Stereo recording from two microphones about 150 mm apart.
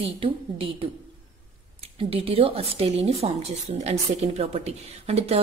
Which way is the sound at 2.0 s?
40° right (ahead or behind).